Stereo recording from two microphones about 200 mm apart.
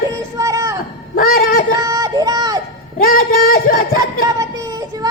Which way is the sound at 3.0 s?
45° left (ahead or behind).